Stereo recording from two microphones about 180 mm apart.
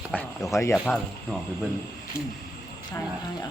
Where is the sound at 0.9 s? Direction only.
5° left (ahead or behind).